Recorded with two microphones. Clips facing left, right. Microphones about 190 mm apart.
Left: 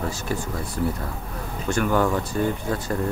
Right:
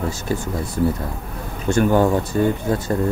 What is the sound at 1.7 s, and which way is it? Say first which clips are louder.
Speech: right 5 dB; 25° right (ahead or behind).